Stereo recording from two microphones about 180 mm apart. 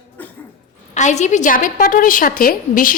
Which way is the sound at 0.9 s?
40° left (ahead or behind).